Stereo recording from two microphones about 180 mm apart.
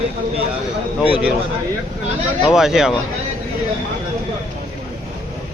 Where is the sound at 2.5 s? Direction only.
Centre (ahead or behind).